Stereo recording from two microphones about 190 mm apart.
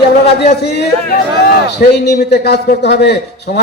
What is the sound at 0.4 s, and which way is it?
Chopping, 60° left (ahead or behind).